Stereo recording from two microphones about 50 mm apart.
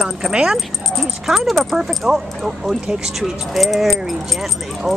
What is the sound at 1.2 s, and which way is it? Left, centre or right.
Speech, centre.